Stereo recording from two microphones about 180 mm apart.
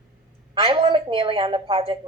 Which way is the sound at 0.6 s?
30° right (ahead or behind).